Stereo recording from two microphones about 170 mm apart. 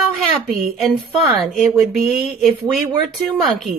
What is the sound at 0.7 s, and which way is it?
A woman's voice, centre (ahead or behind).